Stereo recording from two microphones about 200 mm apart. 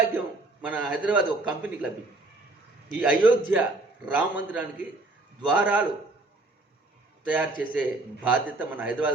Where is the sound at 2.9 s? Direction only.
5° right (ahead or behind).